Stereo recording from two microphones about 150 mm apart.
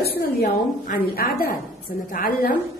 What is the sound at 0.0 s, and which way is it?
A woman's voice, 90° left.